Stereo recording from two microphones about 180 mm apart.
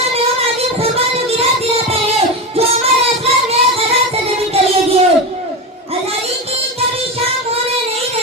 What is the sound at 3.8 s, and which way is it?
Music, 35° right (ahead or behind).